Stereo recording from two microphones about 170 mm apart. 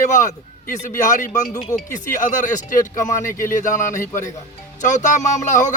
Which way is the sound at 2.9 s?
20° left (ahead or behind).